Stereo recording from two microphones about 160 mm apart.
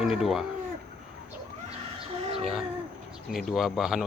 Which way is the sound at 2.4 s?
Centre (ahead or behind).